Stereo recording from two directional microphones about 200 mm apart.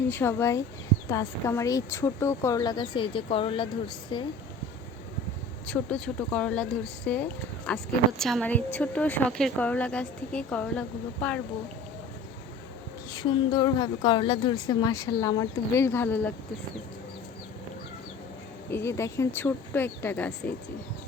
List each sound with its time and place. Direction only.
0.1 s speech: 10° left (ahead or behind)
5.6 s speech: 5° left (ahead or behind)
13.1 s speech: 20° left (ahead or behind)
18.7 s speech: 15° left (ahead or behind)